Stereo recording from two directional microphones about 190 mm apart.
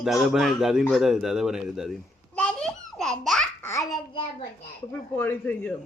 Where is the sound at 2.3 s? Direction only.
5° left (ahead or behind).